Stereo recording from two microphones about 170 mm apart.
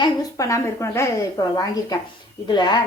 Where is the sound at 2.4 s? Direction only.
25° left (ahead or behind).